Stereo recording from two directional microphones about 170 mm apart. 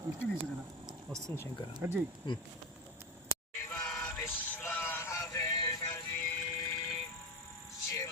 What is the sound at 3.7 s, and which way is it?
Music, 10° left (ahead or behind).